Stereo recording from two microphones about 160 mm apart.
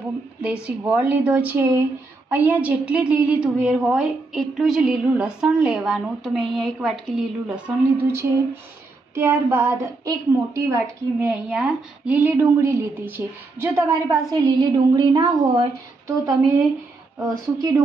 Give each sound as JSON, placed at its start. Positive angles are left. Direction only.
{"t": 0.4, "sound": "a woman's voice", "side_deg": -5}